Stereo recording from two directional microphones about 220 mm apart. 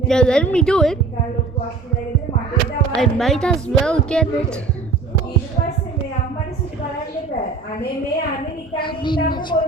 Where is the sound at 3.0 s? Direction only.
Centre (ahead or behind).